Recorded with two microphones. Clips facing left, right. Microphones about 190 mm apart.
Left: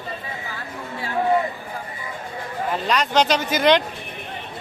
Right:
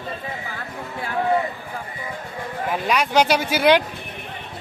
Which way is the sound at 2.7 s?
10° right (ahead or behind).